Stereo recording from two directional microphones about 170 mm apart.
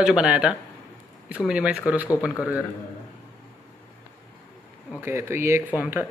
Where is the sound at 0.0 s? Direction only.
5° right (ahead or behind).